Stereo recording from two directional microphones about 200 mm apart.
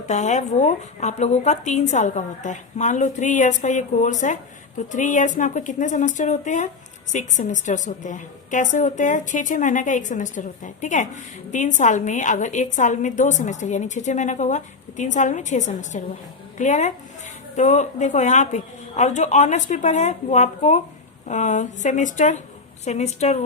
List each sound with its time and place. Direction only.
0.1 s a woman's voice: 35° left (ahead or behind)